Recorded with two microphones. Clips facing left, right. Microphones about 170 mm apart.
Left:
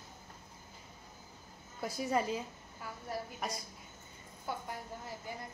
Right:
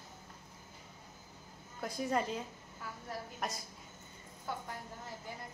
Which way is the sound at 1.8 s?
5° left (ahead or behind).